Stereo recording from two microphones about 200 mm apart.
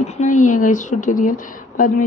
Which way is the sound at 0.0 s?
40° left (ahead or behind).